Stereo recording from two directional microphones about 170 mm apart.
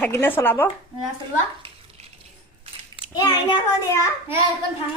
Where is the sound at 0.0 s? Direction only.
10° left (ahead or behind).